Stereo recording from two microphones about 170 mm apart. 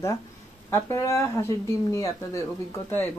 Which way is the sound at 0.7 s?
15° left (ahead or behind).